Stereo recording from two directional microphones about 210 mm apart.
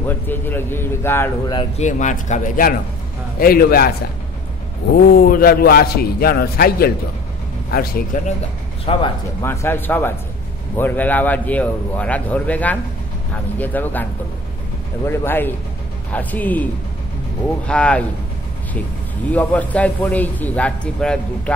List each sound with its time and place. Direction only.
0.3 s a man's voice: 10° left (ahead or behind)
1.6 s a man's voice: 35° left (ahead or behind)
4.9 s a man's voice: 45° left (ahead or behind)
8.9 s speech: 25° left (ahead or behind)
9.4 s a man's voice: 10° left (ahead or behind)
15.0 s a man's voice: 10° left (ahead or behind)
17.6 s speech: 5° left (ahead or behind)
19.3 s a man's voice: 5° left (ahead or behind)